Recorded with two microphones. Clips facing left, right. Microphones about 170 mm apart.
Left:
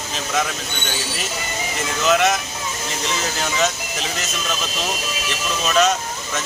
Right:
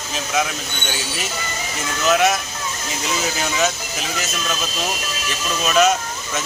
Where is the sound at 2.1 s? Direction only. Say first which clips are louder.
Right 1 dB; 5° right (ahead or behind).